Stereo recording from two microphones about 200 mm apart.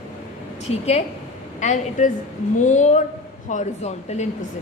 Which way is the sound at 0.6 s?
35° left (ahead or behind).